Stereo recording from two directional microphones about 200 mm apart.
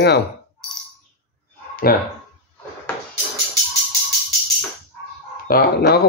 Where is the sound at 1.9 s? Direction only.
45° left (ahead or behind).